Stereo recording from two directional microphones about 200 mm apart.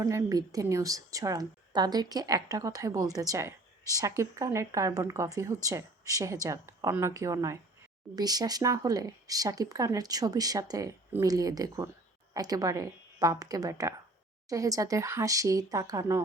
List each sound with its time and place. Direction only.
0.0 s speech: 15° right (ahead or behind)